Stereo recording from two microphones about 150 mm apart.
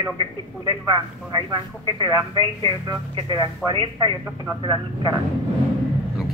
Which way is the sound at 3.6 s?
Centre (ahead or behind).